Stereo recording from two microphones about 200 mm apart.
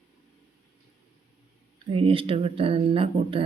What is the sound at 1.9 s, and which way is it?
A woman's voice, 25° right (ahead or behind).